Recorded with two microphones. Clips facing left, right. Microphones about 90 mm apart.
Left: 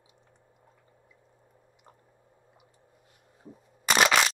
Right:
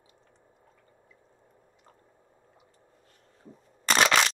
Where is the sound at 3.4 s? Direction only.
5° left (ahead or behind).